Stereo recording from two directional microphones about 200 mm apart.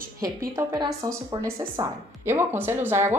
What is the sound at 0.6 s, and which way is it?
A woman's voice, 15° right (ahead or behind).